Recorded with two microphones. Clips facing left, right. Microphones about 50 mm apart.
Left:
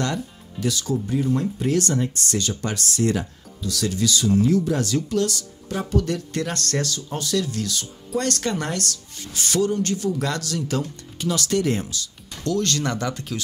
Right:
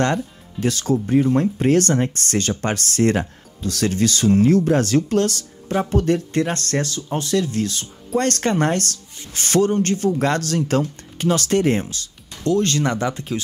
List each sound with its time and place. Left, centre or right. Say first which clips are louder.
0.0 s speech: right 6 dB; right